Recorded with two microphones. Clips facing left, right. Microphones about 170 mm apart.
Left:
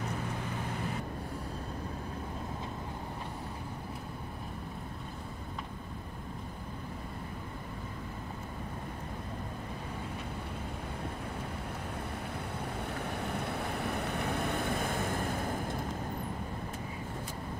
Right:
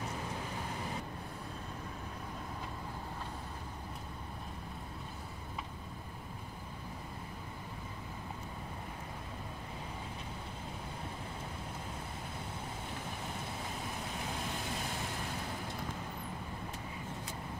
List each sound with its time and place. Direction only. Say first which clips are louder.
12.9 s vehicle: left 6 dB; 65° left (ahead or behind); by 15.7 s 50° left (ahead or behind)